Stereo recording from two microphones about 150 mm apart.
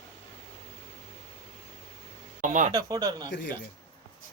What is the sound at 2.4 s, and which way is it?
Speech, 60° right (ahead or behind).